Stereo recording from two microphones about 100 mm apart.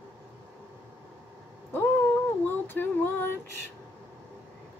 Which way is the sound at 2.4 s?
20° left (ahead or behind).